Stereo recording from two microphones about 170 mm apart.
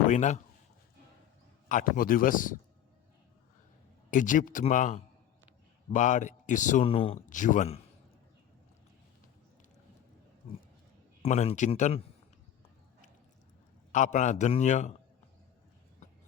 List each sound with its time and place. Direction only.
0.1 s speech: 45° left (ahead or behind)
1.6 s a man's voice: 55° left (ahead or behind)
4.1 s a man's voice: 50° left (ahead or behind)
6.8 s speech: 35° left (ahead or behind)
7.3 s a man's voice: 50° left (ahead or behind)
11.2 s speech: 40° left (ahead or behind)
13.9 s a man's voice: 45° left (ahead or behind)